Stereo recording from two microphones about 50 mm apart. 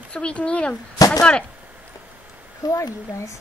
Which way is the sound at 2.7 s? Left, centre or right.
Left.